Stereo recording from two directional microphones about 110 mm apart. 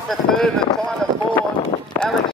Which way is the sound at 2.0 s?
25° left (ahead or behind).